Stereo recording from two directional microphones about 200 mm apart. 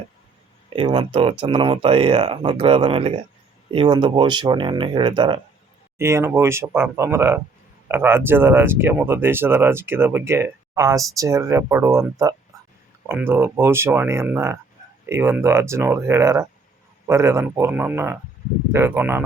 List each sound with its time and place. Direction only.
0.7 s speech: 25° right (ahead or behind)
6.0 s speech: 15° right (ahead or behind)